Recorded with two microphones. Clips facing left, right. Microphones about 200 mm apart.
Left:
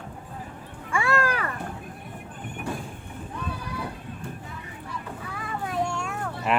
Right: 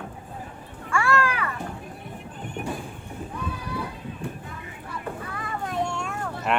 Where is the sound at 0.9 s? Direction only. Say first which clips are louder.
Right 1 dB; 20° left (ahead or behind).